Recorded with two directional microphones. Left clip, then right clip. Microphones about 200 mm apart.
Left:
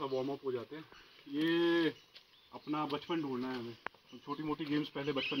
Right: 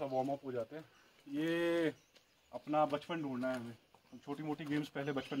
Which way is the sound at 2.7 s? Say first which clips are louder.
Right 3 dB; 10° right (ahead or behind).